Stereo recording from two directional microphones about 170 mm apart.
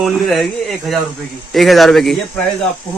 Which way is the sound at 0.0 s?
Centre (ahead or behind).